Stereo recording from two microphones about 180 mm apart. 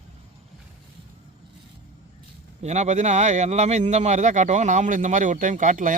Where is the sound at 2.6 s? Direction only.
40° right (ahead or behind).